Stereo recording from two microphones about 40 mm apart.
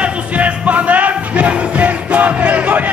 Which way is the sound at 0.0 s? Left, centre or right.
Right.